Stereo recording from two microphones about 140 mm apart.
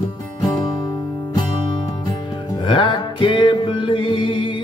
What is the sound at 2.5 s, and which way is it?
Music, 35° left (ahead or behind).